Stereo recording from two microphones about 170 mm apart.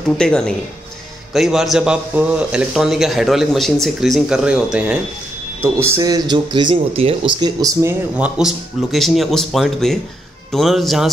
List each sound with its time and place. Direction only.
0.2 s speech: 5° left (ahead or behind); by 7.9 s 20° right (ahead or behind)
8.2 s speech: 5° right (ahead or behind)